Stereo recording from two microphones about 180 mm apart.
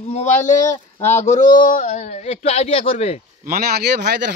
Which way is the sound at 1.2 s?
40° left (ahead or behind).